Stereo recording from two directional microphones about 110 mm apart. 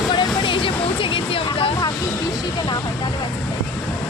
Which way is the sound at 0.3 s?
50° left (ahead or behind).